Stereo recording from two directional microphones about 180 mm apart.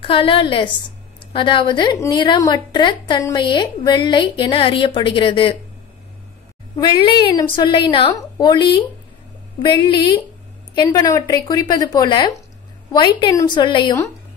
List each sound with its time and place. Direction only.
0.0 s a woman's voice: 30° left (ahead or behind)
6.8 s a woman's voice: 25° left (ahead or behind)